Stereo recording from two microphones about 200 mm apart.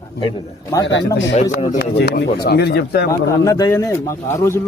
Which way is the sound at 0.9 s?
65° left (ahead or behind).